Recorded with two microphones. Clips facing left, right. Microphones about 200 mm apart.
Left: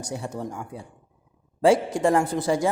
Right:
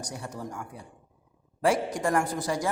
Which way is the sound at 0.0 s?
25° left (ahead or behind).